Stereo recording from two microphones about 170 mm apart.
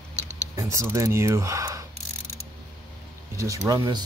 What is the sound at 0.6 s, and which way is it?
Speech, 15° right (ahead or behind).